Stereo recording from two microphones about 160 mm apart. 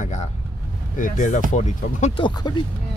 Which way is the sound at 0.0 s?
45° left (ahead or behind).